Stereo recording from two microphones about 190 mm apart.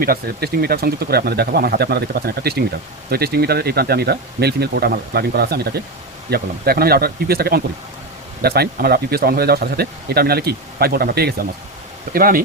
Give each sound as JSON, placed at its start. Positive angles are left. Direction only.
{"t": 0.0, "sound": "speech", "side_deg": -50}